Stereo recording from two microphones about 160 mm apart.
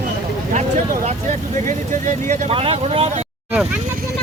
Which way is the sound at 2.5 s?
35° right (ahead or behind).